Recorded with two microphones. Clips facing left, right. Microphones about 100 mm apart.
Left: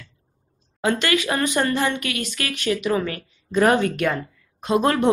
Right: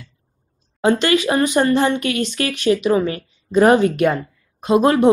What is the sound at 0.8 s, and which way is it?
A woman's voice, 25° right (ahead or behind).